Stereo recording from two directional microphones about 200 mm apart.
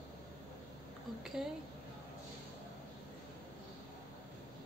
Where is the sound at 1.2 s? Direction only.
Centre (ahead or behind).